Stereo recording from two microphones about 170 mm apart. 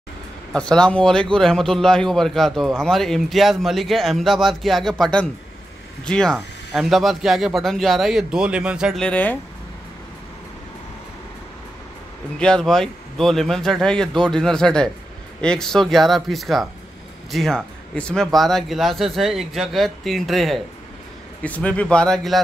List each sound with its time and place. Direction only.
0.5 s a man's voice: 5° left (ahead or behind)
12.4 s a man's voice: 5° left (ahead or behind)